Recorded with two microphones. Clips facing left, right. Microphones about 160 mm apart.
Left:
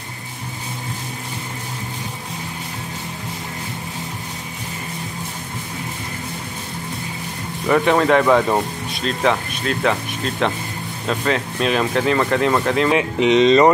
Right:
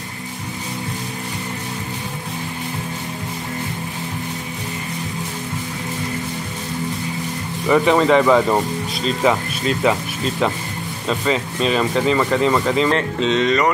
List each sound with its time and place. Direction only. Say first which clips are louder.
7.6 s speech: right 1 dB; centre (ahead or behind)
13.2 s speech: left 7 dB; 20° left (ahead or behind)